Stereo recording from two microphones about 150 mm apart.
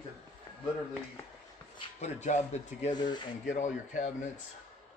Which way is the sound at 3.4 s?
55° left (ahead or behind).